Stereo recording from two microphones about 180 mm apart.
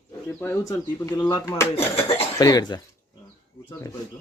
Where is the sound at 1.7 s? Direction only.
35° left (ahead or behind).